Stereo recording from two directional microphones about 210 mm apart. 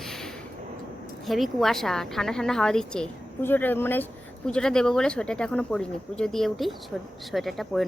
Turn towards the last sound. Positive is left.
turn(degrees=0)  # may be behind; listen again after turning